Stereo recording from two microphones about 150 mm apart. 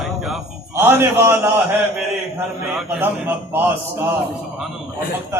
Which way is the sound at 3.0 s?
15° right (ahead or behind).